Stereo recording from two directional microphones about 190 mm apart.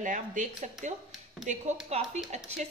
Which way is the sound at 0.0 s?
40° right (ahead or behind).